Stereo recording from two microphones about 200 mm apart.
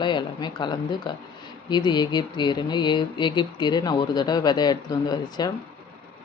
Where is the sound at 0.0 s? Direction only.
25° left (ahead or behind).